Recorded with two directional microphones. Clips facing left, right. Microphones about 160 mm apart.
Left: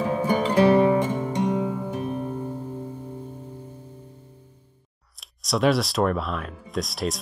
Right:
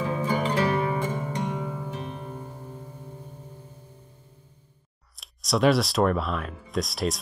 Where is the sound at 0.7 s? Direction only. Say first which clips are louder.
Left 8 dB; 30° left (ahead or behind).